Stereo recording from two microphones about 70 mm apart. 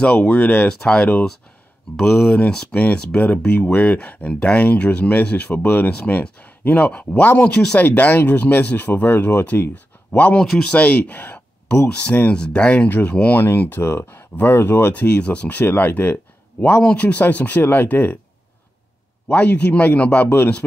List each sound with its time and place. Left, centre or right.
0.3 s speech: left
10.4 s speech: centre
10.7 s speech: centre
12.8 s speech: left
19.2 s speech: left